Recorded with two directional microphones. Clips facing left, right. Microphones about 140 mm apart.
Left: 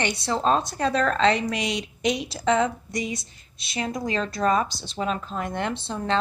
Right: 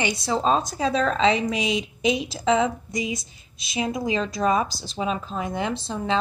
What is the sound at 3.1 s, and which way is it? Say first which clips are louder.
Speech: right 2 dB; 90° right.